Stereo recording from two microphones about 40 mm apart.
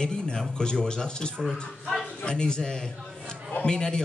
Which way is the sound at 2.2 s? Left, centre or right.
Left.